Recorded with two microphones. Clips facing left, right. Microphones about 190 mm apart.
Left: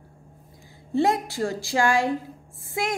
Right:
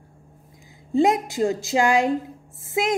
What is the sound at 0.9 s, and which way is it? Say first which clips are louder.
A woman's voice: right 3 dB; 20° right (ahead or behind).